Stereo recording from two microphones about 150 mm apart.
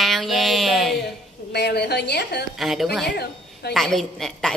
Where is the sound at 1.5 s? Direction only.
90° left.